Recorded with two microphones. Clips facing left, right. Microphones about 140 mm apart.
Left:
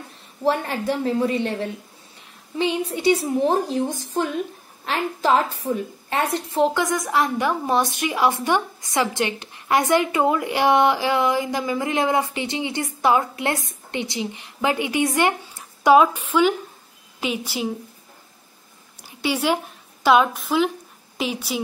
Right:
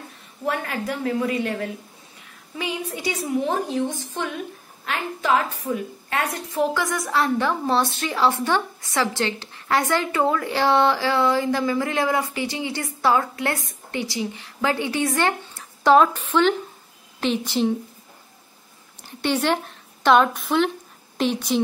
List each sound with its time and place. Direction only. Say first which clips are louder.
0.4 s a woman's voice: left 4 dB; 30° left (ahead or behind); by 17.7 s 5° left (ahead or behind)
19.2 s a woman's voice: even; 10° left (ahead or behind)